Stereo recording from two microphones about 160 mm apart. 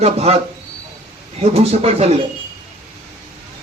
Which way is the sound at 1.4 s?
40° right (ahead or behind).